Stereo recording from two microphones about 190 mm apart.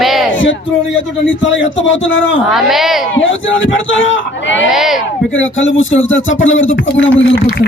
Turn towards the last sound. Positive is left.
turn(degrees=85)